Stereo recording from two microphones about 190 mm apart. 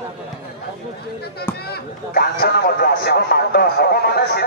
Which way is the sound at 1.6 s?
55° left (ahead or behind).